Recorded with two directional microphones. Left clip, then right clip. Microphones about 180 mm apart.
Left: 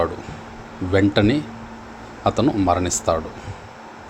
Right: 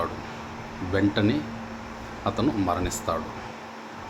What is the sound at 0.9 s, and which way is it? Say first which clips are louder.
A man's voice: left 7 dB; 35° left (ahead or behind).